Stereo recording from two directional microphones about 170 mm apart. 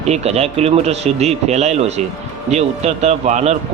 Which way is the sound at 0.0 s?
40° right (ahead or behind).